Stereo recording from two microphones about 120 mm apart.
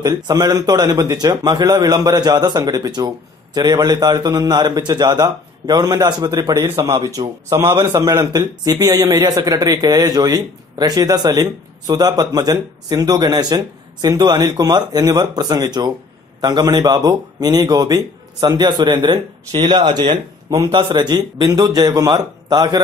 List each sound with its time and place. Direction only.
0.0 s a man's voice: 35° right (ahead or behind)